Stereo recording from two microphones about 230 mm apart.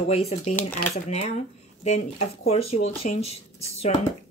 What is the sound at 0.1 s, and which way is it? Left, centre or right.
Speech, left.